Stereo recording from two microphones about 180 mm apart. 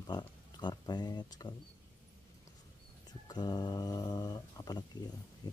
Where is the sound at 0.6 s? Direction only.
25° left (ahead or behind).